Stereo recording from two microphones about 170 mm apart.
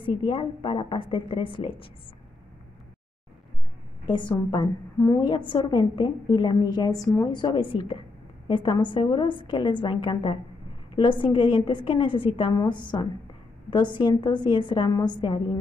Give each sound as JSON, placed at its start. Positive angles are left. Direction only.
{"t": 0.0, "sound": "a woman's voice", "side_deg": 30}
{"t": 4.3, "sound": "a woman's voice", "side_deg": 20}